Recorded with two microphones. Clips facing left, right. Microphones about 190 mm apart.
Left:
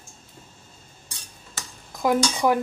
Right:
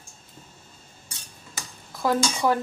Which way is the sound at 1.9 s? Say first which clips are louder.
Left 2 dB; 15° left (ahead or behind).